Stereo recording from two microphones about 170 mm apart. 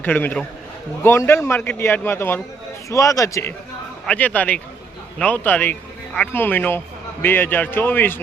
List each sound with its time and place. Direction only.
0.0 s a man's voice: 10° left (ahead or behind)
4.0 s a man's voice: 10° left (ahead or behind)